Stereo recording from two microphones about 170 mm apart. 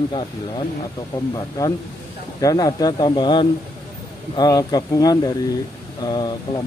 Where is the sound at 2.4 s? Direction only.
20° left (ahead or behind).